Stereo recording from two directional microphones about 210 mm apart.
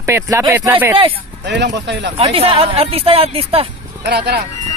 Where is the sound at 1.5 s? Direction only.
55° right (ahead or behind).